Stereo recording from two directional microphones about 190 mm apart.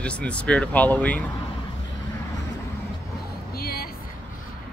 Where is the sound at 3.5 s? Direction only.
55° left (ahead or behind).